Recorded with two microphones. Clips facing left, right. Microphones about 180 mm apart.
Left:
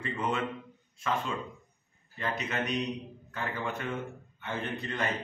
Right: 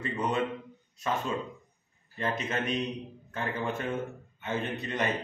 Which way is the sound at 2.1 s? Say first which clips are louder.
Right 2 dB; 25° right (ahead or behind).